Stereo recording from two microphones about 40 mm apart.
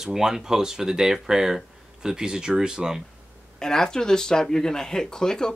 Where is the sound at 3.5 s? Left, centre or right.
Centre.